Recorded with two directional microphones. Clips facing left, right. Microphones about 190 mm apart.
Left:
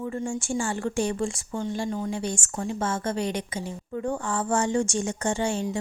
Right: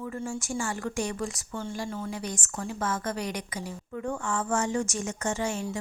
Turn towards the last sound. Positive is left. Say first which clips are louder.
# left 4 dB
turn(degrees=30)  # may be behind; listen again after turning